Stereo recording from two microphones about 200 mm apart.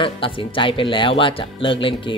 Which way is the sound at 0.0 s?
25° left (ahead or behind).